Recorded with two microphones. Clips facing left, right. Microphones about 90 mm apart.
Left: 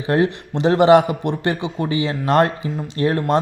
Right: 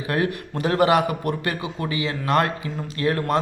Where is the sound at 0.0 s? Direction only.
25° left (ahead or behind).